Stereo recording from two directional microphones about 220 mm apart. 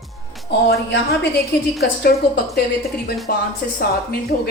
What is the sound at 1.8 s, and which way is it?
A woman's voice, 45° left (ahead or behind).